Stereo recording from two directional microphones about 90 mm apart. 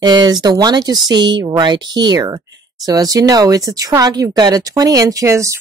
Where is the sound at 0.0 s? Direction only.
50° right (ahead or behind).